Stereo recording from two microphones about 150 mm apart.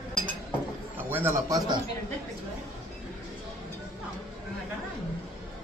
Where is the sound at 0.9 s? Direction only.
15° right (ahead or behind).